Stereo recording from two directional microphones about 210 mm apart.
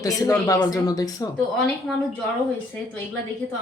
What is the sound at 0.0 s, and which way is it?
Speech, 15° left (ahead or behind).